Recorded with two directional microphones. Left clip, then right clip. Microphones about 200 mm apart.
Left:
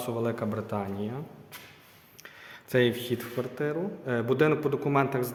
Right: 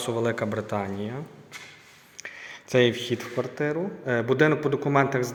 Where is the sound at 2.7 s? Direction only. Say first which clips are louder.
Right 4 dB; centre (ahead or behind).